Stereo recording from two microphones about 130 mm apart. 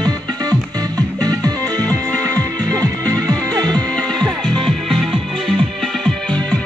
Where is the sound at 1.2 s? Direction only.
30° right (ahead or behind).